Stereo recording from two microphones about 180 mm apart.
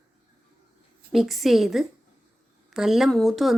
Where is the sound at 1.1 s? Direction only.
Centre (ahead or behind).